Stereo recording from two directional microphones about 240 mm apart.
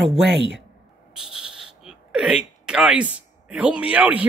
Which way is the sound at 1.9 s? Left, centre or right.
Centre.